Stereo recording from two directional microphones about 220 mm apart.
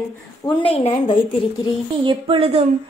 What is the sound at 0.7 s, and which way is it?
Speech, 30° left (ahead or behind).